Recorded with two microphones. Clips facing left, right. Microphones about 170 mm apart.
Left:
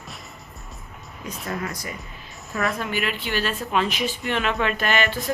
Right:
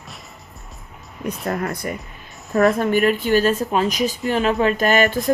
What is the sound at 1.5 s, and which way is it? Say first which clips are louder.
Speech: right 6 dB; 55° right (ahead or behind).